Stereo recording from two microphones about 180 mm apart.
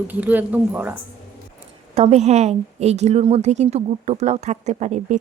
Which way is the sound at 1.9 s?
35° right (ahead or behind).